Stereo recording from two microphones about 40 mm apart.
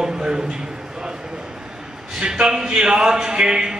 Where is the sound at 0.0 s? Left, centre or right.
Centre.